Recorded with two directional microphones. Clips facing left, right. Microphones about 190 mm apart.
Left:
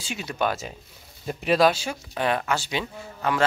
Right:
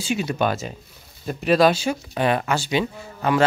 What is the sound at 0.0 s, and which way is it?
Speech, 5° right (ahead or behind).